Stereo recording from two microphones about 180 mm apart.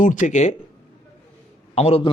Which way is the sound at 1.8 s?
35° left (ahead or behind).